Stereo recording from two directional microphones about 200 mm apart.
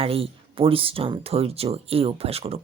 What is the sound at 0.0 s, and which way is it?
A woman's voice, 30° right (ahead or behind).